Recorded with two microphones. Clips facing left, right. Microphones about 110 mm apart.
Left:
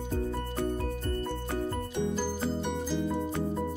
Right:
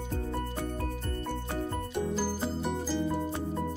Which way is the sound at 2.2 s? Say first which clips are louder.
Left 1 dB; 5° right (ahead or behind).